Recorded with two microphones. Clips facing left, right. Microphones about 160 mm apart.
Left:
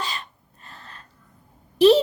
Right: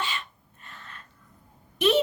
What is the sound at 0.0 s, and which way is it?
Sneeze, 40° left (ahead or behind).